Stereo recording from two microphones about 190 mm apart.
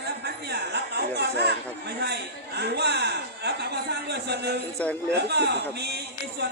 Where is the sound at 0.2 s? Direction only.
60° right (ahead or behind).